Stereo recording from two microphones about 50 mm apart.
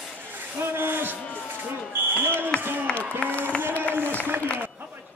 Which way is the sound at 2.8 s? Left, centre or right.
Left.